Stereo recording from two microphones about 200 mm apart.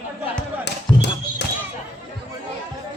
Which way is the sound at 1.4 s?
60° left (ahead or behind).